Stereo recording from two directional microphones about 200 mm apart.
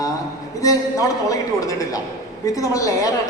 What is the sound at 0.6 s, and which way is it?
A man's voice, 15° left (ahead or behind).